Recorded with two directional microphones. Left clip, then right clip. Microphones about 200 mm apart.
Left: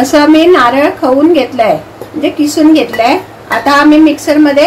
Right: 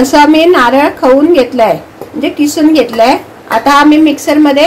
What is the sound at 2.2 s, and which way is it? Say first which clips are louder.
A woman's voice: left 1 dB; 40° right (ahead or behind).